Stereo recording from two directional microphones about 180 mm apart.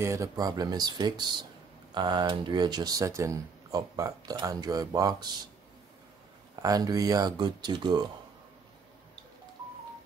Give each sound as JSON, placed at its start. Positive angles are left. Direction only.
{"t": 0.0, "sound": "speech", "side_deg": -15}
{"t": 6.5, "sound": "speech", "side_deg": -20}